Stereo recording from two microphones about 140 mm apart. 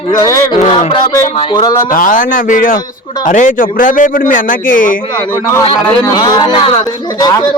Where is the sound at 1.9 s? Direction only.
75° left (ahead or behind).